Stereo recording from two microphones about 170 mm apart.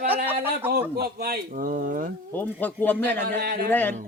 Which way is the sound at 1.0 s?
65° right (ahead or behind).